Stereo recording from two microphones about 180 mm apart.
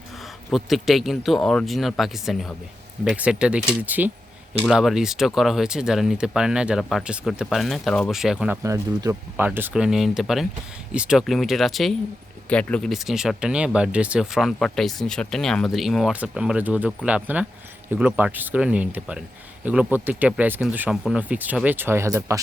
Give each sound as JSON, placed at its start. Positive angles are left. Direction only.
{"t": 0.5, "sound": "speech", "side_deg": 0}
{"t": 9.0, "sound": "speech", "side_deg": -15}